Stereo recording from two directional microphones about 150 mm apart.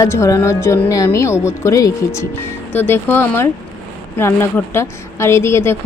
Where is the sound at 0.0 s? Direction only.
20° left (ahead or behind).